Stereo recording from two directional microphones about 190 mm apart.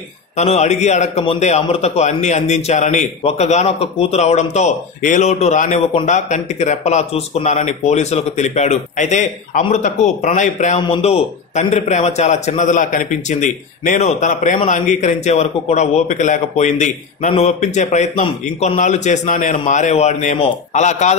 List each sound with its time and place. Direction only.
0.4 s speech: 35° left (ahead or behind)